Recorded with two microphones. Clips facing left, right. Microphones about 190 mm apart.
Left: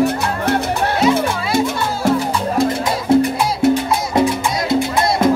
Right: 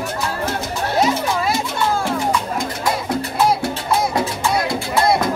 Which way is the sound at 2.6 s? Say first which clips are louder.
Left 5 dB; 25° left (ahead or behind).